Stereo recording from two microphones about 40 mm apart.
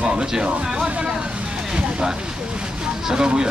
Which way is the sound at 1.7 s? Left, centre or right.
Right.